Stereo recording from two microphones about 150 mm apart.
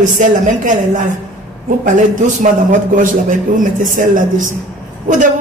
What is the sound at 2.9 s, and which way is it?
A man's voice, 65° right (ahead or behind).